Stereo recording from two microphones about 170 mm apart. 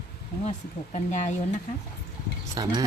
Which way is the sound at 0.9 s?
45° left (ahead or behind).